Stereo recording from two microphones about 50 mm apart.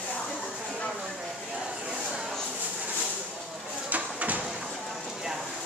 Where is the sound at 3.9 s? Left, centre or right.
Right.